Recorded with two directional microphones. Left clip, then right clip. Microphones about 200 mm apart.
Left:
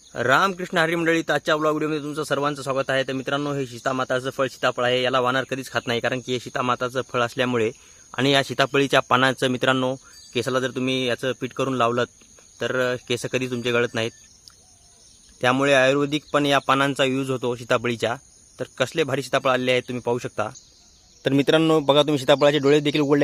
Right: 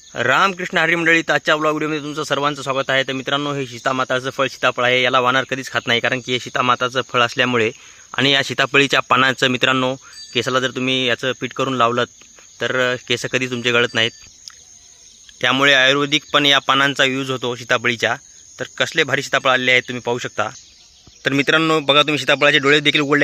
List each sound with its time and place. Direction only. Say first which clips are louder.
0.1 s a man's voice: right 4 dB; 15° right (ahead or behind)
15.4 s speech: right 4 dB; centre (ahead or behind)
21.2 s speech: right 3 dB; 15° left (ahead or behind)